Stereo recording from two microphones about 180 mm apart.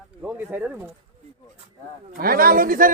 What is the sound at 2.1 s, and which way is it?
Speech, 55° right (ahead or behind).